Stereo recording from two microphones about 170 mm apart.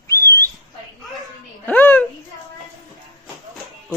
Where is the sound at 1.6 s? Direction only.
10° left (ahead or behind).